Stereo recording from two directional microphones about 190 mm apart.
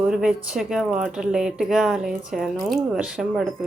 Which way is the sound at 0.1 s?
5° right (ahead or behind).